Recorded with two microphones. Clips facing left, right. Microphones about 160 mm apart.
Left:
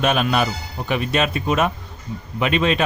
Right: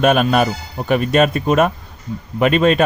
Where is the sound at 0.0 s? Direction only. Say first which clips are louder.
Right 5 dB; 45° right (ahead or behind).